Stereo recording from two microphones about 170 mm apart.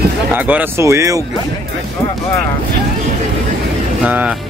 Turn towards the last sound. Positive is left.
turn(degrees=-10)  # may be behind; listen again after turning